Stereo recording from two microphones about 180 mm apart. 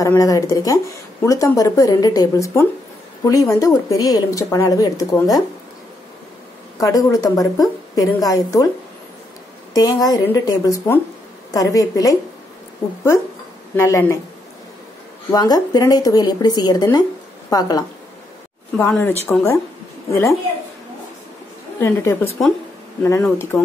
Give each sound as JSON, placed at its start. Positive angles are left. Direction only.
{"t": 0.0, "sound": "speech", "side_deg": 20}
{"t": 6.8, "sound": "speech", "side_deg": 20}
{"t": 9.8, "sound": "speech", "side_deg": 20}
{"t": 13.7, "sound": "a woman's voice", "side_deg": 15}
{"t": 15.3, "sound": "a woman's voice", "side_deg": 20}
{"t": 21.7, "sound": "a woman's voice", "side_deg": 15}